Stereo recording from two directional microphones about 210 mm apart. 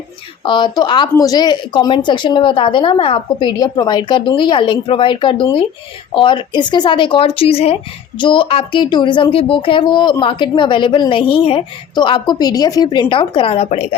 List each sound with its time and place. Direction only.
0.4 s speech: 20° left (ahead or behind)